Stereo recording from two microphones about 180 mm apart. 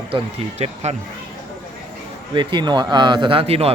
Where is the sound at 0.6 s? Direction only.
35° right (ahead or behind).